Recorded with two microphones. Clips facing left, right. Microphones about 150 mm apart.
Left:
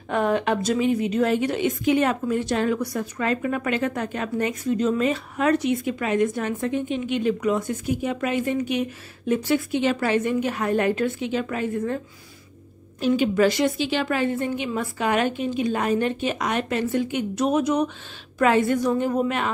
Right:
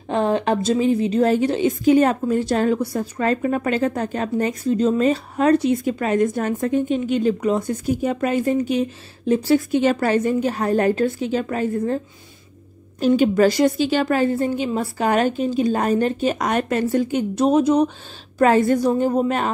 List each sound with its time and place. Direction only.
0.1 s a woman's voice: 30° right (ahead or behind)
13.0 s a woman's voice: 40° right (ahead or behind)